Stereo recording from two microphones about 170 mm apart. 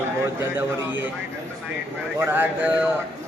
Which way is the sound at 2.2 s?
10° right (ahead or behind).